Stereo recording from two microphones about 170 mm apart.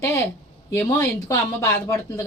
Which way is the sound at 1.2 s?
20° left (ahead or behind).